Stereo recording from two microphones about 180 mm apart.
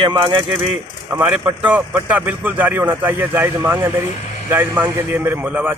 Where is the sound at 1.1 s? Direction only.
10° right (ahead or behind).